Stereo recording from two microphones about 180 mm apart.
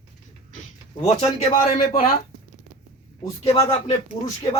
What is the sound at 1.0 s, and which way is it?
Speech, 35° left (ahead or behind).